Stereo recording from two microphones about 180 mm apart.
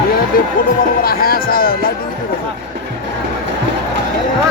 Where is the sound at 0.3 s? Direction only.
55° left (ahead or behind).